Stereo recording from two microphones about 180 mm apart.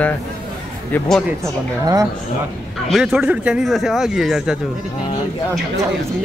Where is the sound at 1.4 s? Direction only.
20° right (ahead or behind).